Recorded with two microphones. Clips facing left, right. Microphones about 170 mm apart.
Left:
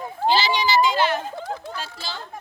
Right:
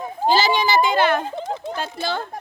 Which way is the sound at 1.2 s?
20° right (ahead or behind).